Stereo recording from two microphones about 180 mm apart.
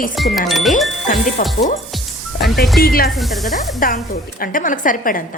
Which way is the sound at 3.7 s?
50° left (ahead or behind).